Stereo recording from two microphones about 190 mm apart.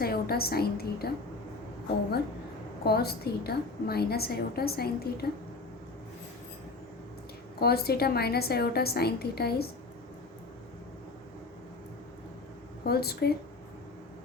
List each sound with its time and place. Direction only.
0.0 s a woman's voice: 55° left (ahead or behind)
2.8 s a woman's voice: 55° left (ahead or behind)
7.6 s a woman's voice: 55° left (ahead or behind)
12.8 s a woman's voice: 55° left (ahead or behind)